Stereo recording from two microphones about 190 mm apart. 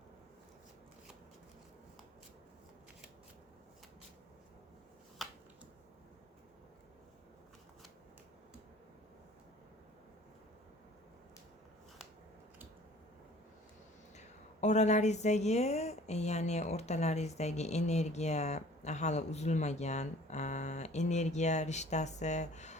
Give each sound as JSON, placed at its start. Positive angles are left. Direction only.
{"t": 14.2, "sound": "a woman's voice", "side_deg": 35}